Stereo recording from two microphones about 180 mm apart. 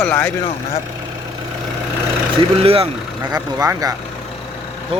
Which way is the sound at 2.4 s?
30° right (ahead or behind).